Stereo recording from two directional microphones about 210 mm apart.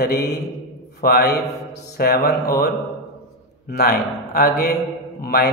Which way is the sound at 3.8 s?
45° left (ahead or behind).